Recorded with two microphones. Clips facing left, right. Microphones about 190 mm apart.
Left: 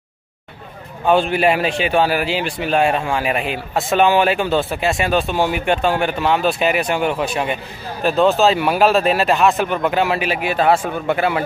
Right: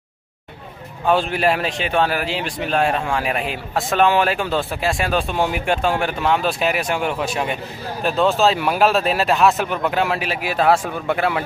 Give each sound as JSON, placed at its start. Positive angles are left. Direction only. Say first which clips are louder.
{"t": 1.0, "sound": "a man's voice", "louder": "left 3 dB", "side_deg": 0}